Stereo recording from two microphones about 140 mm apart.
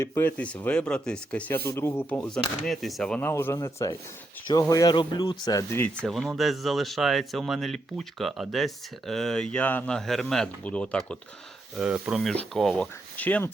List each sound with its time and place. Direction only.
0.0 s speech: 15° left (ahead or behind)
2.6 s speech: centre (ahead or behind)
3.2 s a man's voice: 15° left (ahead or behind)
6.1 s speech: centre (ahead or behind)
11.8 s speech: 10° right (ahead or behind); by 13.5 s 10° left (ahead or behind)